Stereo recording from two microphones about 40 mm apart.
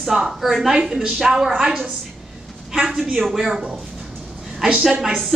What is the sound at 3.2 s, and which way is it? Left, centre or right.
Speech, centre.